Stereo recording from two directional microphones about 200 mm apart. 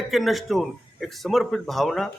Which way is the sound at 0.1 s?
Centre (ahead or behind).